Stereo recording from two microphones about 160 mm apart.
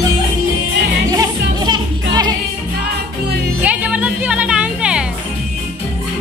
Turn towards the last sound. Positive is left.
turn(degrees=-5)  # may be behind; listen again after turning